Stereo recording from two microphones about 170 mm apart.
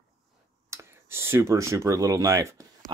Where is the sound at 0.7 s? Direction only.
15° right (ahead or behind).